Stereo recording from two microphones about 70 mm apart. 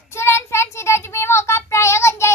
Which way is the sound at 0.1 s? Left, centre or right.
Left.